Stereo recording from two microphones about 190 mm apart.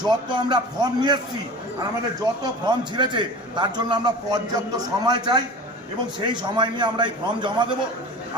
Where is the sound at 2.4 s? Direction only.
25° right (ahead or behind).